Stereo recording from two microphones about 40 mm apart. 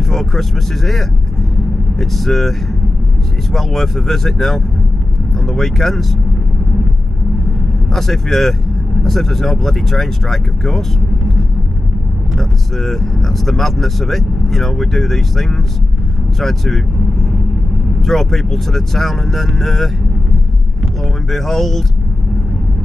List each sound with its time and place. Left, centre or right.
0.0 s speech: centre
3.5 s speech: centre
7.9 s speech: centre
21.3 s speech: centre